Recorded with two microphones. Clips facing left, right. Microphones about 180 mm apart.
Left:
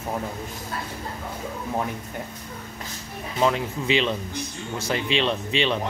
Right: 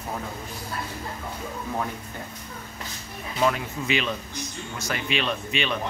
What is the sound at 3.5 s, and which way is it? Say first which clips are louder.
Speech: left 3 dB; 25° left (ahead or behind).